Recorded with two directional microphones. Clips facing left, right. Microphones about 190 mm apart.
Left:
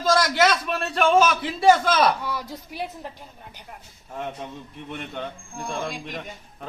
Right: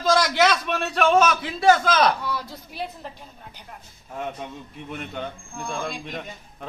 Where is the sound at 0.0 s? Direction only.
Centre (ahead or behind).